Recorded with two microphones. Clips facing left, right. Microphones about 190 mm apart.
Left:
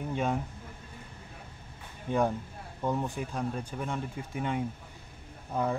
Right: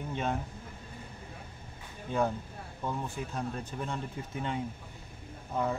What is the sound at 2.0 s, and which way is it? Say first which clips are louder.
Speech: left 2 dB; 15° left (ahead or behind).